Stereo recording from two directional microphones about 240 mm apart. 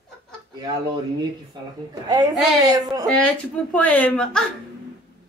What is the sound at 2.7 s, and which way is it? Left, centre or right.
Speech, centre.